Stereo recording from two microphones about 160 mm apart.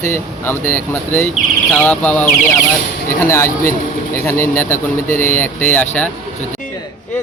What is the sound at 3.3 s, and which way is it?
Speech, 15° left (ahead or behind).